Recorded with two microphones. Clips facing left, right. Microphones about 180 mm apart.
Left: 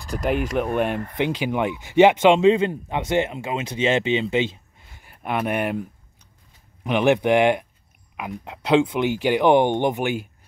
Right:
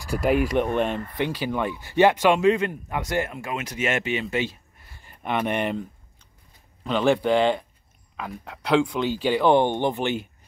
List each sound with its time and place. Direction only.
0.2 s speech: centre (ahead or behind); by 5.0 s 20° left (ahead or behind)
5.0 s speech: 5° left (ahead or behind)